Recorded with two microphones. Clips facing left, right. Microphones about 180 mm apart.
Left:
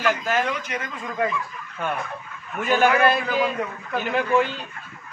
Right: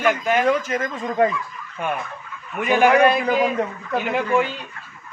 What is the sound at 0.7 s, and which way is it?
Speech, 40° right (ahead or behind).